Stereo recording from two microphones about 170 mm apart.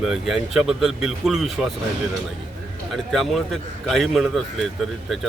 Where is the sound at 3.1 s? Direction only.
Centre (ahead or behind).